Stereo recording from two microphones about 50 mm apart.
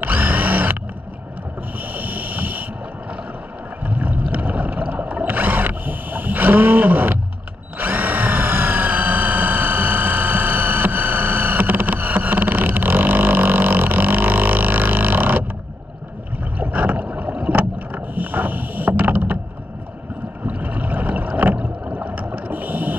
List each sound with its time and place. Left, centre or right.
0.0 s drill: right
2.0 s vehicle: right
3.8 s a sound: right
5.2 s wild animals: right
7.8 s a sound: right
16.5 s boat: right
20.4 s boat: right